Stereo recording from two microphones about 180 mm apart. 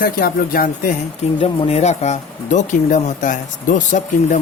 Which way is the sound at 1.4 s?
35° left (ahead or behind).